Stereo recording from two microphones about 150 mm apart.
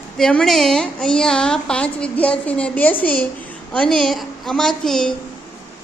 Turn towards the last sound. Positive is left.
turn(degrees=5)  # may be behind; listen again after turning